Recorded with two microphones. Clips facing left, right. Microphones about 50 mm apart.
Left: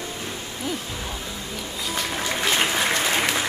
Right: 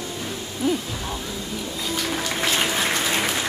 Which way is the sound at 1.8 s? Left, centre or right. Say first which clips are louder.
Even; centre.